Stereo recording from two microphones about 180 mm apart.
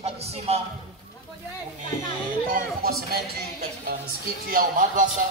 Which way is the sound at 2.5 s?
55° right (ahead or behind).